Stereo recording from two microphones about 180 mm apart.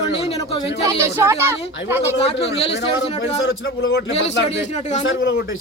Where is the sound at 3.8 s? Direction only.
60° left (ahead or behind).